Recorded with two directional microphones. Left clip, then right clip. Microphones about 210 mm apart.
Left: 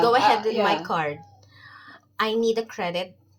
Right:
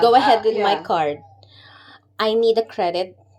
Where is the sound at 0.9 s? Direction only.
45° right (ahead or behind).